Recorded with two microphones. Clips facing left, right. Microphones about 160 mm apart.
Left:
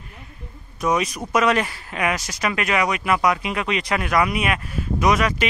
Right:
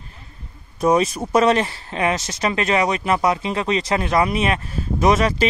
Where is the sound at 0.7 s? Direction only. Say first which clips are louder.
Right 5 dB; 30° right (ahead or behind).